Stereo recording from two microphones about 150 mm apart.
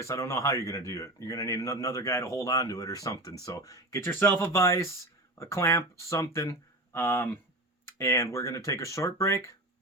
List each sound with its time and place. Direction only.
0.0 s speech: 20° left (ahead or behind)